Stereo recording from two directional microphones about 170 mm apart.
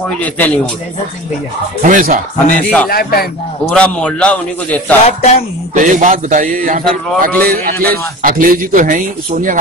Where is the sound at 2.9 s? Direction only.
60° left (ahead or behind).